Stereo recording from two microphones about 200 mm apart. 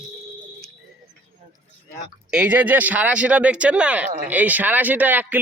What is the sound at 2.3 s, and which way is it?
Speech, 5° right (ahead or behind).